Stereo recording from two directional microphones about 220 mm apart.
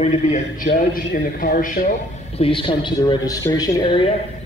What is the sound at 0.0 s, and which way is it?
A man's voice, 30° left (ahead or behind).